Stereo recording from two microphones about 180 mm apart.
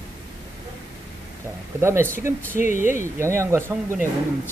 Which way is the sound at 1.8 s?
15° right (ahead or behind).